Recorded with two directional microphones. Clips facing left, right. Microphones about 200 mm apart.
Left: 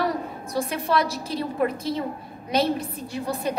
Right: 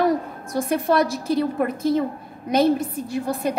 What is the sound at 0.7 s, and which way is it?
A woman's voice, 50° right (ahead or behind).